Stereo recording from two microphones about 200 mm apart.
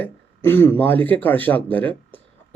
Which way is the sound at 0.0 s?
10° left (ahead or behind).